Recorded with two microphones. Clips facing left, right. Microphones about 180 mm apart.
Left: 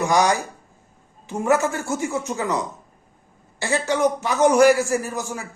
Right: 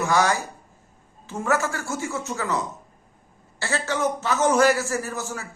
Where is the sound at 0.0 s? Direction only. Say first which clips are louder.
Left 3 dB; 15° left (ahead or behind).